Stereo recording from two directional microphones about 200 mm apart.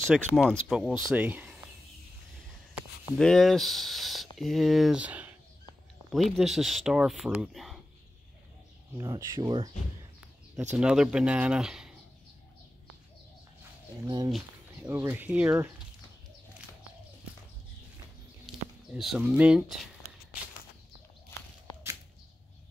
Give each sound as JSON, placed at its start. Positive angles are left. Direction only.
{"t": 0.0, "sound": "speech", "side_deg": 5}
{"t": 3.2, "sound": "speech", "side_deg": 0}
{"t": 8.9, "sound": "speech", "side_deg": -20}
{"t": 10.8, "sound": "speech", "side_deg": -5}
{"t": 14.0, "sound": "speech", "side_deg": -20}
{"t": 18.9, "sound": "speech", "side_deg": -5}
{"t": 21.7, "sound": "a sound", "side_deg": 25}